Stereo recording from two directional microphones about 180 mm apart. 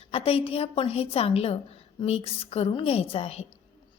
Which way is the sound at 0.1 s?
30° left (ahead or behind).